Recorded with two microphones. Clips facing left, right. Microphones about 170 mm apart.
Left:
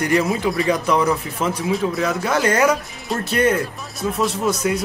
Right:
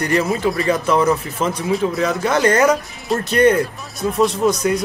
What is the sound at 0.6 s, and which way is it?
Speech, 10° left (ahead or behind).